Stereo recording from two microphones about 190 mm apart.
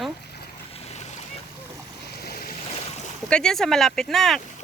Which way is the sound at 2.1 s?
55° left (ahead or behind).